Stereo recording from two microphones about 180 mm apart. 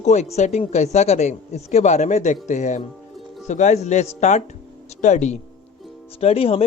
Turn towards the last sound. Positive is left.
turn(degrees=35)  # may be behind; listen again after turning